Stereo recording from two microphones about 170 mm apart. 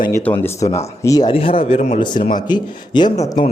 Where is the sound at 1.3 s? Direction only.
30° left (ahead or behind).